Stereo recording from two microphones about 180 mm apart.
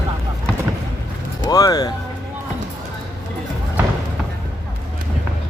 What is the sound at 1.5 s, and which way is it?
Speech, 20° left (ahead or behind).